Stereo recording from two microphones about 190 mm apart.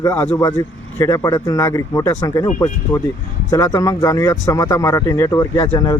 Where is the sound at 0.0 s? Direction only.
15° left (ahead or behind).